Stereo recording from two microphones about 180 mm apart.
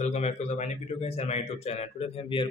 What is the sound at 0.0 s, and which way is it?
A man's voice, 35° left (ahead or behind).